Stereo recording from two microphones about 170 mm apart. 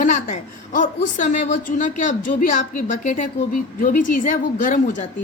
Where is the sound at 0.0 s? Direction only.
50° left (ahead or behind).